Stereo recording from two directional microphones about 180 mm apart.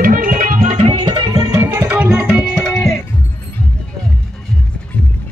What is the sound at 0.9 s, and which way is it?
Tabla, 25° right (ahead or behind).